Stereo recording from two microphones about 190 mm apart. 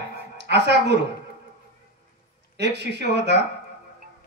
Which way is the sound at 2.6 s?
65° right (ahead or behind).